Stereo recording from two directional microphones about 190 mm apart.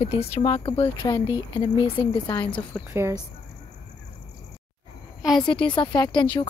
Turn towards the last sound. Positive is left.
turn(degrees=25)  # may be behind; listen again after turning